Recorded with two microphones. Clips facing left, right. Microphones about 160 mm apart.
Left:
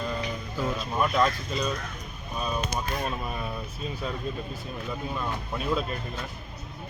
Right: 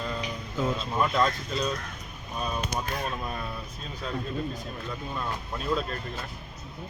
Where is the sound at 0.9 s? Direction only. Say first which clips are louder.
Left 2 dB; 5° left (ahead or behind).